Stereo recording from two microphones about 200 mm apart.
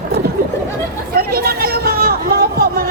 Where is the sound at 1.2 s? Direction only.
50° right (ahead or behind).